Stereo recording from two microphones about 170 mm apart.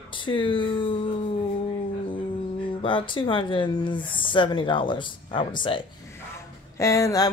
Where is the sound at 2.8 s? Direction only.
30° left (ahead or behind).